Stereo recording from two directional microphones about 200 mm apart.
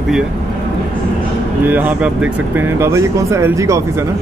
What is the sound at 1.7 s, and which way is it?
Speech, 10° right (ahead or behind).